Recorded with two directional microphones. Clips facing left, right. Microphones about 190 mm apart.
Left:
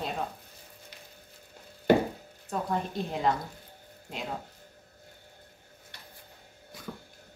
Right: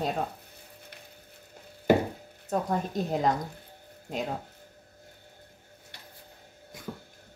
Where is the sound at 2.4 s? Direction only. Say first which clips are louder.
Right 3 dB; 40° right (ahead or behind).